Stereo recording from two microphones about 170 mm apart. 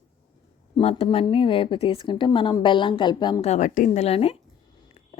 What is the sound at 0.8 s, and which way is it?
Speech, 35° left (ahead or behind).